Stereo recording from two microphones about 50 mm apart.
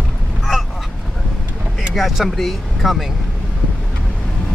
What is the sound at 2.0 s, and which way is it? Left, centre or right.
Speech, centre.